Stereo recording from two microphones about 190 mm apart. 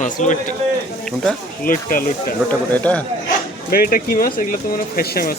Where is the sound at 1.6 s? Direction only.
50° left (ahead or behind).